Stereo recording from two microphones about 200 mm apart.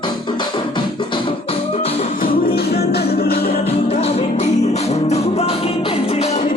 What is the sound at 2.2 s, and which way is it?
Music, 50° left (ahead or behind).